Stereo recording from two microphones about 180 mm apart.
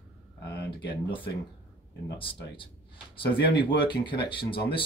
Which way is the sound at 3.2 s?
25° left (ahead or behind).